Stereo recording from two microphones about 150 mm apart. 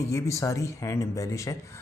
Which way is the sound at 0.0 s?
20° left (ahead or behind).